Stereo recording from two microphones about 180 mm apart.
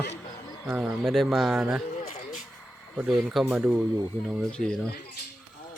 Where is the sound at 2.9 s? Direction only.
10° right (ahead or behind).